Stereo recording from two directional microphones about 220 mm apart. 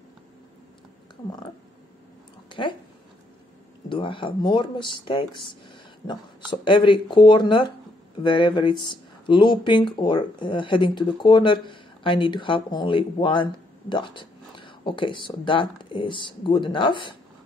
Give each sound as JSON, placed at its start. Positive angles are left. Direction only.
{"t": 3.9, "sound": "speech", "side_deg": 20}